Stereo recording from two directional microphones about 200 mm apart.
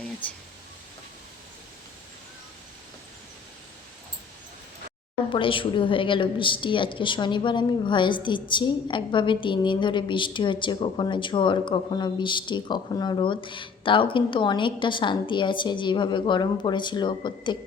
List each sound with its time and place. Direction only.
5.3 s a woman's voice: 25° left (ahead or behind)